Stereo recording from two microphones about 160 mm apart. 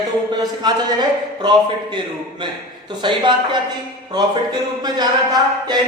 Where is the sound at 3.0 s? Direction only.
30° right (ahead or behind).